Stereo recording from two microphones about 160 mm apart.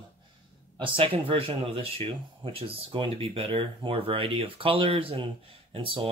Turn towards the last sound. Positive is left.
turn(degrees=-35)  # may be behind; listen again after turning